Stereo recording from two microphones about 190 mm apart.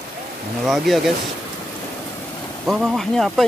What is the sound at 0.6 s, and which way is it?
Speech, centre (ahead or behind).